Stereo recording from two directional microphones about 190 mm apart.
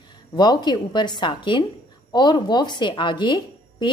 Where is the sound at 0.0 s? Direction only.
20° left (ahead or behind).